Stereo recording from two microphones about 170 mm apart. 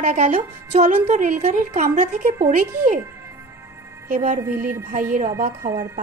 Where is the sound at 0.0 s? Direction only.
45° right (ahead or behind).